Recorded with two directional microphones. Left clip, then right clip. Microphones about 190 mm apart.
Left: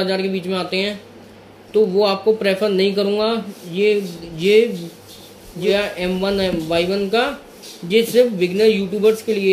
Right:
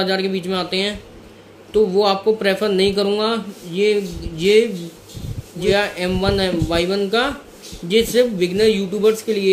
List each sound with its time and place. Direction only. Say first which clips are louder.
0.0 s speech: right 1 dB; 15° right (ahead or behind)